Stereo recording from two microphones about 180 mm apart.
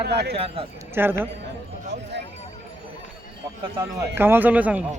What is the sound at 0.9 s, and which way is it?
Speech, 10° right (ahead or behind).